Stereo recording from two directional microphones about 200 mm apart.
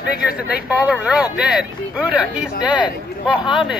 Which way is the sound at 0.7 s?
5° right (ahead or behind).